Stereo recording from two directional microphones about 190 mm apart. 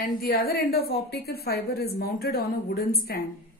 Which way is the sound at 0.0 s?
55° left (ahead or behind).